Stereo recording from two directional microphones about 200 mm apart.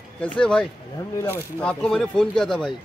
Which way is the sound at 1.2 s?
15° left (ahead or behind).